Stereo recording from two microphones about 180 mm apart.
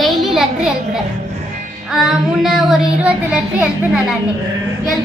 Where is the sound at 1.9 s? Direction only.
Centre (ahead or behind).